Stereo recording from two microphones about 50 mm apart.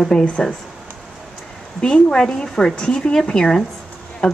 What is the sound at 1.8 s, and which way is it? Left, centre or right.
A woman's voice, centre.